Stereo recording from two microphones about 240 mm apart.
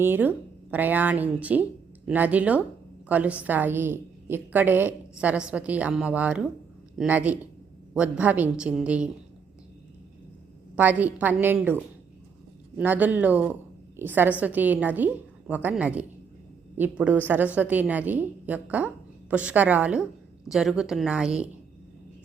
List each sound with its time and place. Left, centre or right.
0.0 s a woman's voice: centre
10.8 s a woman's voice: centre